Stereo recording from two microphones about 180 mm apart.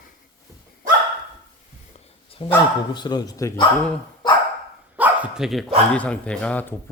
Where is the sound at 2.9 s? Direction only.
25° left (ahead or behind).